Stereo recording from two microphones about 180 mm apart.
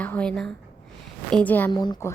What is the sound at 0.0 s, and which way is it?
Speech, 5° left (ahead or behind).